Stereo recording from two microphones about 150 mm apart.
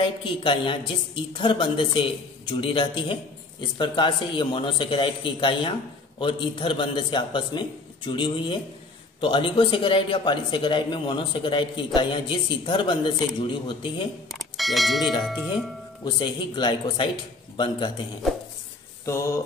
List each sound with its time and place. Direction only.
0.0 s a man's voice: 35° left (ahead or behind)
14.3 s speech: centre (ahead or behind)
15.5 s a man's voice: 30° left (ahead or behind)